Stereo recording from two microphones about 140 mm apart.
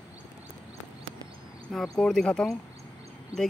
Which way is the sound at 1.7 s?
5° left (ahead or behind).